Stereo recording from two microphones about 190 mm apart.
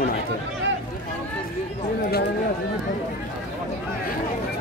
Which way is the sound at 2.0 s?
55° left (ahead or behind).